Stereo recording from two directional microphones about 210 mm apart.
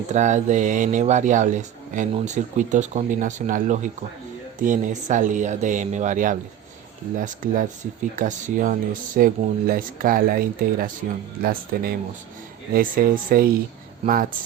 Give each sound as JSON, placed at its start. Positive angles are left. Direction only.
{"t": 0.1, "sound": "speech", "side_deg": -35}